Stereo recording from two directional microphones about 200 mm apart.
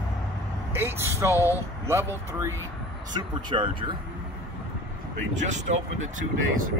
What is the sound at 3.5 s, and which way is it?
Speech, 25° right (ahead or behind).